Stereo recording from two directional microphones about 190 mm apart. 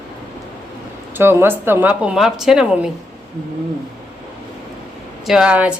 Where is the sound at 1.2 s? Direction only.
10° right (ahead or behind).